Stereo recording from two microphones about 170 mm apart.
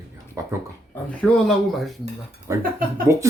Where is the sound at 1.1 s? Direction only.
5° left (ahead or behind).